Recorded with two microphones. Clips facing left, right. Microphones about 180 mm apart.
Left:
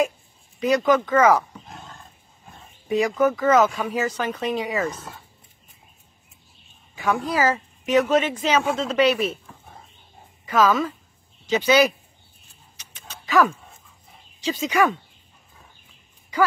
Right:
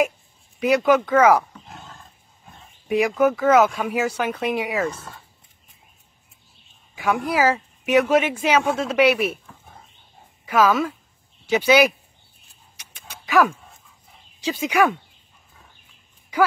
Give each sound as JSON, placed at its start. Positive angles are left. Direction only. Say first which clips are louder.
{"t": 0.6, "sound": "speech", "louder": "right 2 dB", "side_deg": -10}
{"t": 1.7, "sound": "roar", "louder": "even", "side_deg": 0}
{"t": 2.9, "sound": "speech", "louder": "right 1 dB", "side_deg": -10}
{"t": 4.8, "sound": "speech", "louder": "right 1 dB", "side_deg": 10}
{"t": 7.0, "sound": "speech", "louder": "right 1 dB", "side_deg": -10}
{"t": 9.5, "sound": "a sound", "louder": "left 1 dB", "side_deg": 5}
{"t": 10.4, "sound": "speech", "louder": "right 1 dB", "side_deg": -10}
{"t": 12.8, "sound": "a sound", "louder": "right 2 dB", "side_deg": -10}
{"t": 13.1, "sound": "dog", "louder": "right 1 dB", "side_deg": -10}
{"t": 14.4, "sound": "speech", "louder": "right 1 dB", "side_deg": -10}